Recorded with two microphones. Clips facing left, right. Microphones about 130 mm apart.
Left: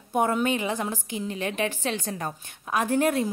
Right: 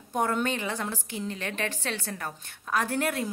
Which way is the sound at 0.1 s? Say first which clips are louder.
Left 4 dB; 15° left (ahead or behind).